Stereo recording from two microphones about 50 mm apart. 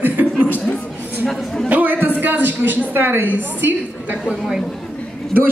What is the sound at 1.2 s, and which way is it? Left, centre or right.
Speech, centre.